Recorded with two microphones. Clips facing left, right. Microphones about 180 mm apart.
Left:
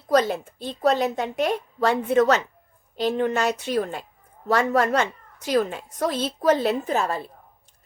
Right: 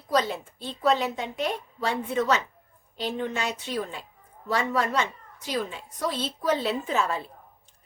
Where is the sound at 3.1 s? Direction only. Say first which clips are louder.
Left 6 dB; 45° left (ahead or behind).